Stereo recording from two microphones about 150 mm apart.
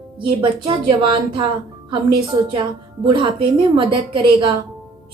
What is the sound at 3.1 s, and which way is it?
A woman's voice, 30° right (ahead or behind).